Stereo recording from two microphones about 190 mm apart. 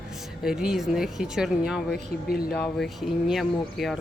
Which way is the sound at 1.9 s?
55° left (ahead or behind).